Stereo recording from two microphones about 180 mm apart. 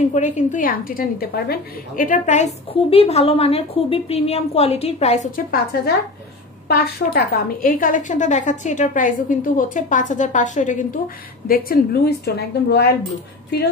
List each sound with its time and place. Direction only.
0.1 s a woman's voice: 40° left (ahead or behind)
11.4 s a woman's voice: 55° left (ahead or behind)